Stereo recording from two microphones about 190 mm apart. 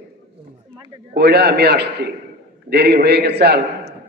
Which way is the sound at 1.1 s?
60° right (ahead or behind).